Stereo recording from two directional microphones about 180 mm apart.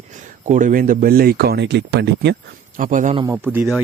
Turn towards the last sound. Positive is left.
turn(degrees=-10)  # may be behind; listen again after turning